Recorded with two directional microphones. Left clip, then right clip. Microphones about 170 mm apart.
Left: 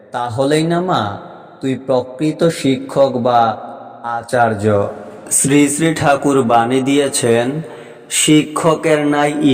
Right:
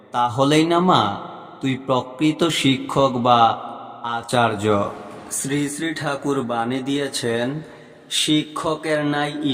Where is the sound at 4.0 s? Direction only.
5° left (ahead or behind).